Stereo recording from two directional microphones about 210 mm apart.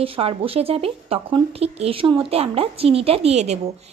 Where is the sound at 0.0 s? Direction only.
25° right (ahead or behind).